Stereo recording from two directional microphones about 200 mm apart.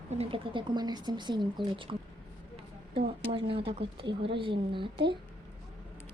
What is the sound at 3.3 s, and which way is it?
Speech, 25° right (ahead or behind).